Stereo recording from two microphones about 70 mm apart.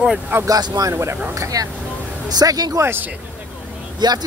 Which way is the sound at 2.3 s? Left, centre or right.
Right.